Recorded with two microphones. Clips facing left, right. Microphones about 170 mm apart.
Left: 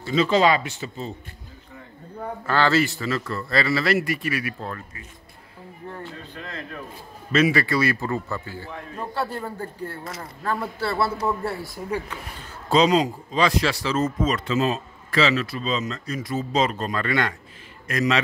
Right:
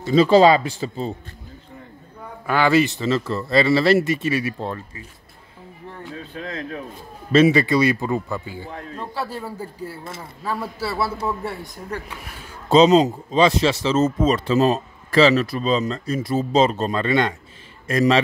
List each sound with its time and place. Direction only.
0.1 s speech: 35° right (ahead or behind)
2.4 s speech: 15° right (ahead or behind)
7.3 s speech: 25° right (ahead or behind)
8.9 s a man's voice: centre (ahead or behind)
12.6 s speech: 25° right (ahead or behind)